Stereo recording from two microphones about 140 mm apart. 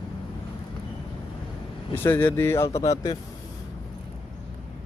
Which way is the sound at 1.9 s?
15° left (ahead or behind).